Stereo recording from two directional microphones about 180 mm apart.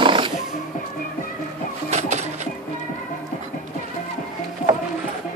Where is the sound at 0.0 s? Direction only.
30° right (ahead or behind).